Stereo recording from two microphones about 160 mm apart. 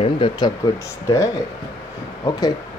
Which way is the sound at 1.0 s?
20° left (ahead or behind).